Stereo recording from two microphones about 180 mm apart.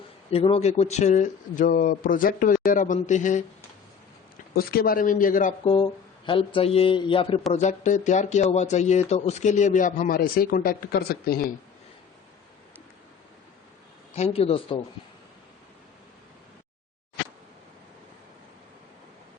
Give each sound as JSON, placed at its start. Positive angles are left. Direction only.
{"t": 0.3, "sound": "speech", "side_deg": 35}
{"t": 4.5, "sound": "speech", "side_deg": 55}
{"t": 5.6, "sound": "speech", "side_deg": 30}
{"t": 7.5, "sound": "speech", "side_deg": 40}
{"t": 14.2, "sound": "speech", "side_deg": 35}